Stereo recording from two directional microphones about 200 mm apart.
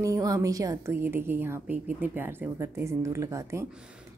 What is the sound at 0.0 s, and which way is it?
A woman's voice, 15° right (ahead or behind).